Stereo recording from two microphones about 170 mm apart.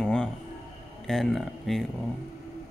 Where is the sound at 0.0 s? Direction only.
5° left (ahead or behind).